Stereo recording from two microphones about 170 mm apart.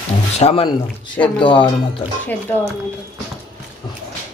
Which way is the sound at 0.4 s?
40° left (ahead or behind).